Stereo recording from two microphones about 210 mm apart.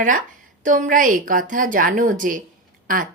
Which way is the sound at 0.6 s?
40° right (ahead or behind).